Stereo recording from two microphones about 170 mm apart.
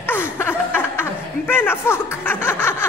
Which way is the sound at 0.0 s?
15° left (ahead or behind).